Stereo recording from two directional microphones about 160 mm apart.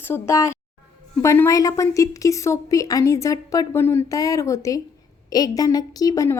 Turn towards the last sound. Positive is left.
turn(degrees=20)  # may be behind; listen again after turning